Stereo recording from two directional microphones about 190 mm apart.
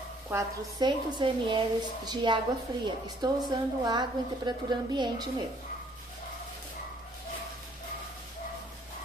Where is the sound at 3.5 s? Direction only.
25° right (ahead or behind).